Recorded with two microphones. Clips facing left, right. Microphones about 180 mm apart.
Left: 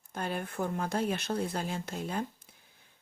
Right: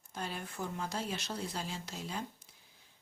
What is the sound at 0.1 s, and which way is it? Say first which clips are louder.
Speech: left 6 dB; 55° left (ahead or behind).